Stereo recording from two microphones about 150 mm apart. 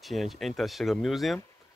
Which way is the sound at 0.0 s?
Centre (ahead or behind).